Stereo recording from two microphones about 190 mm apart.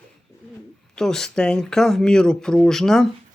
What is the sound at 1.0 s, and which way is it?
Speech, 5° left (ahead or behind).